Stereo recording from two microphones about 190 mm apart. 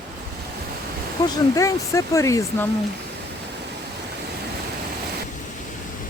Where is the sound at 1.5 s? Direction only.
15° left (ahead or behind).